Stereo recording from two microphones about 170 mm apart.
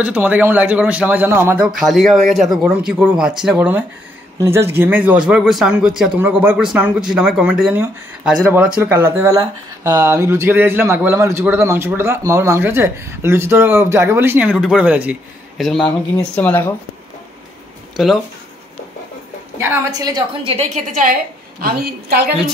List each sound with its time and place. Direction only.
0.0 s a man's voice: 10° right (ahead or behind)
1.7 s a man's voice: centre (ahead or behind)
17.9 s speech: centre (ahead or behind)
19.6 s a woman's voice: 15° right (ahead or behind); by 22.3 s 65° right (ahead or behind)